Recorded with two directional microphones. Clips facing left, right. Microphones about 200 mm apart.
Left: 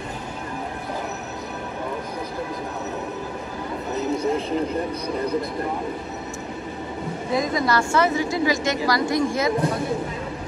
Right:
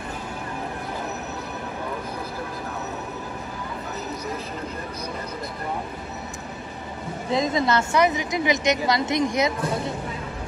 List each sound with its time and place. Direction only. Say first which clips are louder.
7.3 s a woman's voice: even; 20° right (ahead or behind)